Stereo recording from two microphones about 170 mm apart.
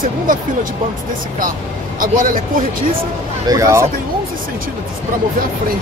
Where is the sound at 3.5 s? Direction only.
20° right (ahead or behind).